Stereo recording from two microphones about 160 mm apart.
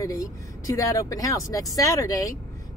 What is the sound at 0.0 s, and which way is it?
Speech, 20° left (ahead or behind).